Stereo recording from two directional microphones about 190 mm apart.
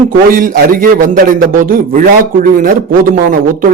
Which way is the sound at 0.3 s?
45° right (ahead or behind).